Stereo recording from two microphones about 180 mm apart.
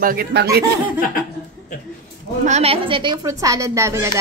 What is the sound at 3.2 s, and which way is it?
Speech, 15° right (ahead or behind).